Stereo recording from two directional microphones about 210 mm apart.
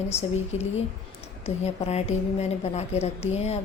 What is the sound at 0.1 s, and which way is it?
A woman's voice, 30° left (ahead or behind).